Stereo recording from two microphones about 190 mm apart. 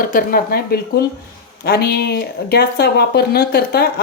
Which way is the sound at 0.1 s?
50° left (ahead or behind).